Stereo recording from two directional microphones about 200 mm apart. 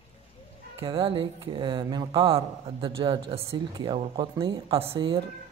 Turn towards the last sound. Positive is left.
turn(degrees=-25)  # may be behind; listen again after turning